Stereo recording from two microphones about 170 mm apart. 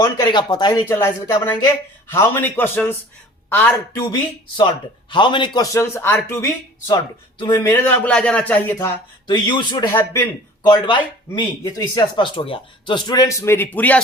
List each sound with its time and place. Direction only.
0.0 s speech: 25° left (ahead or behind)
0.9 s a man's voice: 15° left (ahead or behind)
4.1 s speech: 25° left (ahead or behind)
5.7 s a man's voice: 15° left (ahead or behind)
7.9 s a man's voice: 5° left (ahead or behind)
9.2 s speech: 25° left (ahead or behind)
10.7 s speech: 30° left (ahead or behind); by 14.0 s 10° left (ahead or behind)